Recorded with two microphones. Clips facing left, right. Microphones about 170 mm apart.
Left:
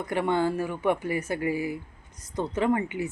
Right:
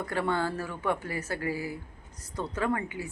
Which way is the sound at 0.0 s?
20° left (ahead or behind).